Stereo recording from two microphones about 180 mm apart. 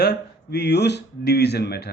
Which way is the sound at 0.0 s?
65° left (ahead or behind).